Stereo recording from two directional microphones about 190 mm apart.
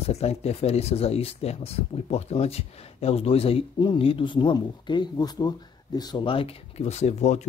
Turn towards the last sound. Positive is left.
turn(degrees=35)  # may be behind; listen again after turning